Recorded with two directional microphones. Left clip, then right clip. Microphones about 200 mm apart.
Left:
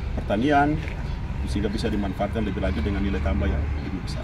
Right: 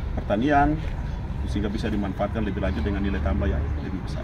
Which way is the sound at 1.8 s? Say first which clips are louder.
Left 1 dB; 15° left (ahead or behind).